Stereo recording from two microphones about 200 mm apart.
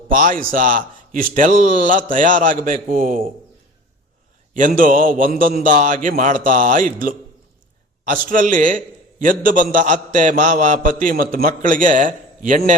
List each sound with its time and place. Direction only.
0.1 s a man's voice: 40° right (ahead or behind)
4.5 s a man's voice: 40° right (ahead or behind)
8.3 s a man's voice: 40° right (ahead or behind)